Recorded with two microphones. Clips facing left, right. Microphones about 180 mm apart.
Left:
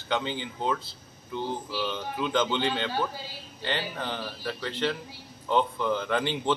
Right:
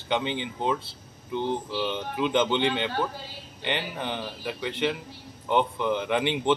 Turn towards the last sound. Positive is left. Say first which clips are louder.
# right 2 dB
turn(degrees=-15)  # may be behind; listen again after turning